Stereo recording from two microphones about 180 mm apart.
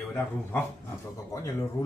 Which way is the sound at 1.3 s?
20° left (ahead or behind).